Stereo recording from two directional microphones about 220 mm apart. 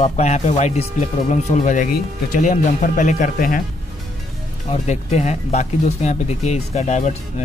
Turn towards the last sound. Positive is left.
turn(degrees=30)  # may be behind; listen again after turning